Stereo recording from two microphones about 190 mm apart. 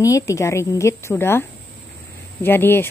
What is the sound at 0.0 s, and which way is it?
Speech, 15° left (ahead or behind).